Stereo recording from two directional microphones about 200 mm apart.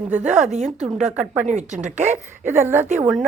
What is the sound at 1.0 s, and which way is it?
Speech, 5° right (ahead or behind).